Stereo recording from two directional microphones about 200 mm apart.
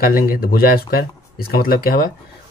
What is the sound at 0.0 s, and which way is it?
Speech, 45° left (ahead or behind).